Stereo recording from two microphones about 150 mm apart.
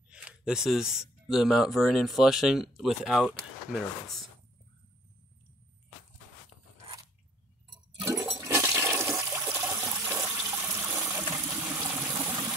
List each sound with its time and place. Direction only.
0.1 s speech: 5° right (ahead or behind)
8.0 s toilet flush: 20° right (ahead or behind)
10.4 s water: 15° right (ahead or behind)